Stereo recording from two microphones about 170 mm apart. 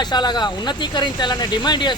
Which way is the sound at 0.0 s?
25° left (ahead or behind).